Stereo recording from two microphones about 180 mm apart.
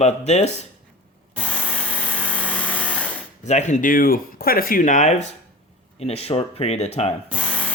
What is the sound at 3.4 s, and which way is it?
Speech, 40° left (ahead or behind).